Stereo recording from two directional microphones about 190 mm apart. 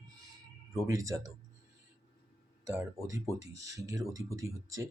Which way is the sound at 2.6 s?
10° right (ahead or behind).